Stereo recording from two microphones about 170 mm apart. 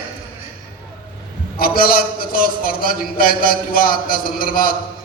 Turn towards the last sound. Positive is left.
turn(degrees=60)  # may be behind; listen again after turning